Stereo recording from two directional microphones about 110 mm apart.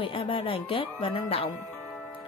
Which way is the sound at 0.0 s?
55° left (ahead or behind).